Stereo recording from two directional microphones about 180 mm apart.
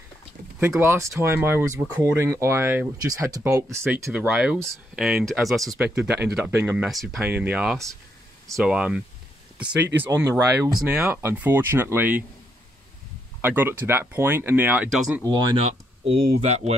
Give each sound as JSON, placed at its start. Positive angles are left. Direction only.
{"t": 0.6, "sound": "speech", "side_deg": -15}
{"t": 13.4, "sound": "speech", "side_deg": -10}
{"t": 15.2, "sound": "speech", "side_deg": -20}